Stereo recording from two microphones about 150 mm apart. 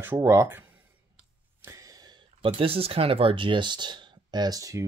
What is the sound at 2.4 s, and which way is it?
Speech, 40° right (ahead or behind).